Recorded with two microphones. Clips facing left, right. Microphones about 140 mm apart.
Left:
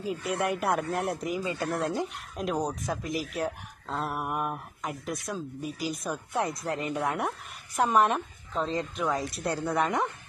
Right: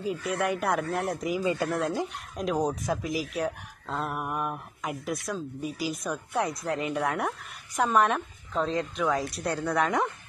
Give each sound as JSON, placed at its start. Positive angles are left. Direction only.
{"t": 0.4, "sound": "speech", "side_deg": 0}
{"t": 1.4, "sound": "speech", "side_deg": -15}
{"t": 1.8, "sound": "speech", "side_deg": 0}